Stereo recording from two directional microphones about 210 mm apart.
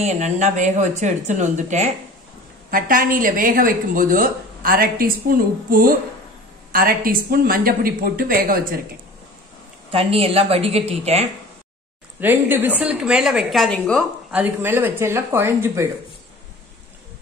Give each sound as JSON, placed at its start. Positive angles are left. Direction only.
{"t": 0.0, "sound": "a woman's voice", "side_deg": -35}
{"t": 9.8, "sound": "a woman's voice", "side_deg": -25}
{"t": 12.2, "sound": "a woman's voice", "side_deg": -10}
{"t": 14.3, "sound": "speech", "side_deg": -10}